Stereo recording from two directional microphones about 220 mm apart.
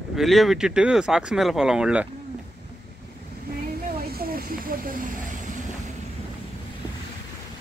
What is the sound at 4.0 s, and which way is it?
Snake, 45° right (ahead or behind).